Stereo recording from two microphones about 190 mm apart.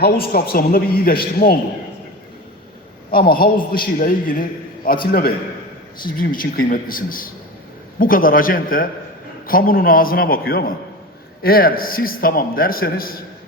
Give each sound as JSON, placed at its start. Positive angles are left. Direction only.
{"t": 0.0, "sound": "a man's voice", "side_deg": 50}
{"t": 3.1, "sound": "a man's voice", "side_deg": 50}
{"t": 6.1, "sound": "a man's voice", "side_deg": 50}